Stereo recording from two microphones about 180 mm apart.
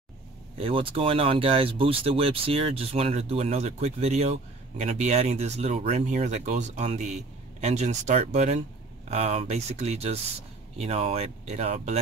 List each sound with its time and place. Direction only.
0.6 s speech: 30° right (ahead or behind)